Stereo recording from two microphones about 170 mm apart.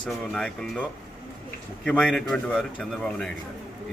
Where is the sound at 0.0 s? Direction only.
5° left (ahead or behind).